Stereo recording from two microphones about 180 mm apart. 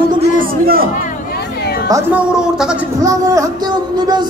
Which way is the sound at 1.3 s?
60° left (ahead or behind).